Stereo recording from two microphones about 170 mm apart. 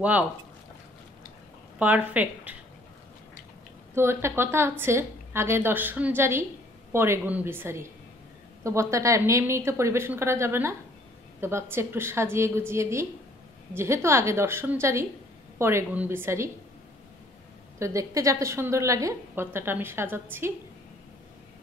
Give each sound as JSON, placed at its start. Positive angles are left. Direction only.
{"t": 1.8, "sound": "a woman's voice", "side_deg": -10}
{"t": 3.9, "sound": "a woman's voice", "side_deg": -15}
{"t": 17.7, "sound": "a woman's voice", "side_deg": -20}